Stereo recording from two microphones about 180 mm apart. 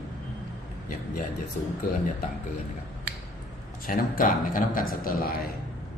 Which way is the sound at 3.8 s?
50° left (ahead or behind).